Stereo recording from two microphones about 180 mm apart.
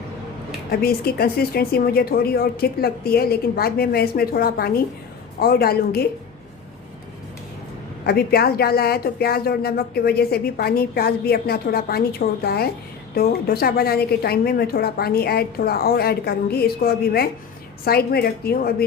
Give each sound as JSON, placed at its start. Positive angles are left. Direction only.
{"t": 0.7, "sound": "a woman's voice", "side_deg": 60}
{"t": 8.0, "sound": "a woman's voice", "side_deg": 60}